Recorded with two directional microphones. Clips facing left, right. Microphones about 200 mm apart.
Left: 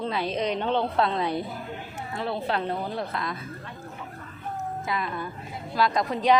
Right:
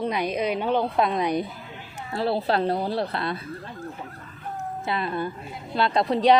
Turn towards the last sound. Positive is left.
turn(degrees=-35)  # may be behind; listen again after turning